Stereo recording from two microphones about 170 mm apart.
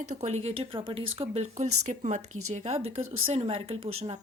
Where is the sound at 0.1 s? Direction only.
40° right (ahead or behind).